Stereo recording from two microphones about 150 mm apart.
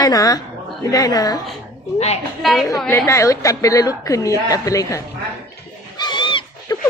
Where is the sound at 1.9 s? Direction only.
45° left (ahead or behind).